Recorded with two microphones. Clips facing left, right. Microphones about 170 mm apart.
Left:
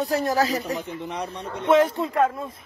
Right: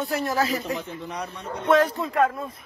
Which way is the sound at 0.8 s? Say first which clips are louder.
Left 2 dB; 25° left (ahead or behind).